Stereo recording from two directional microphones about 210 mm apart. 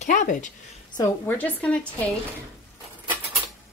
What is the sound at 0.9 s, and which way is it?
Speech, 10° left (ahead or behind).